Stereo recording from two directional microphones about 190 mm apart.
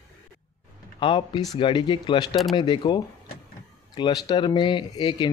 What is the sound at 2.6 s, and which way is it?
Speech, 25° left (ahead or behind).